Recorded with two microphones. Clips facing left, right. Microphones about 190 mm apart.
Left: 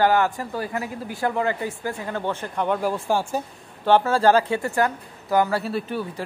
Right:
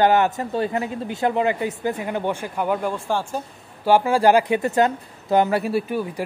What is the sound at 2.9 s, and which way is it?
Speech, 10° left (ahead or behind).